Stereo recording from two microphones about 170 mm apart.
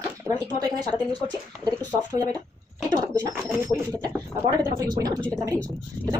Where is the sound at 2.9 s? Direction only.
25° right (ahead or behind).